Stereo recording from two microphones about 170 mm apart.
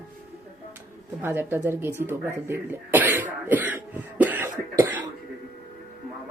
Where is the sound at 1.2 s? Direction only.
10° right (ahead or behind).